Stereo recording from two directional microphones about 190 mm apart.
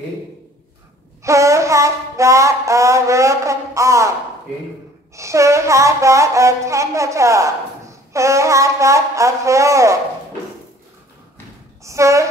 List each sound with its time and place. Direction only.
1.2 s a sound: 15° right (ahead or behind)
5.1 s speech: 15° right (ahead or behind)
11.8 s speech: 15° right (ahead or behind)